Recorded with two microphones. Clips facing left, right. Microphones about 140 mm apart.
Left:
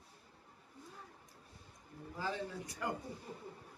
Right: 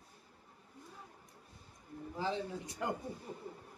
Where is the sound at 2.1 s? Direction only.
25° right (ahead or behind).